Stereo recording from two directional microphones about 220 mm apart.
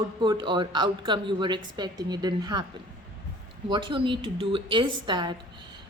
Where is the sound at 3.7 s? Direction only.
20° right (ahead or behind).